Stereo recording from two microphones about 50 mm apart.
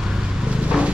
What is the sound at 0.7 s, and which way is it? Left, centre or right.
Vehicle, right.